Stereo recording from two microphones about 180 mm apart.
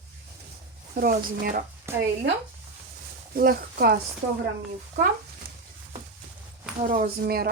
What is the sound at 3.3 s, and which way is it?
Speech, 55° right (ahead or behind).